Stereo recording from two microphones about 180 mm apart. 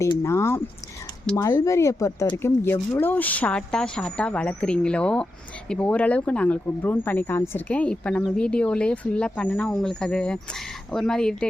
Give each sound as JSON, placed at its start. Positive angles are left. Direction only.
{"t": 0.0, "sound": "speech", "side_deg": 15}